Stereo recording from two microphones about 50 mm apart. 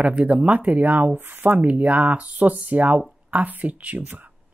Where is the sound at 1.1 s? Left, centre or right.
Right.